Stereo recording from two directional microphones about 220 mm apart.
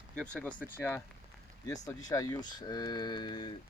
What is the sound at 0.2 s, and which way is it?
Speech, 5° left (ahead or behind).